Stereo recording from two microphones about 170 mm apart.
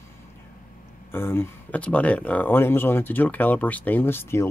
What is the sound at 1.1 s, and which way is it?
Speech, 15° left (ahead or behind).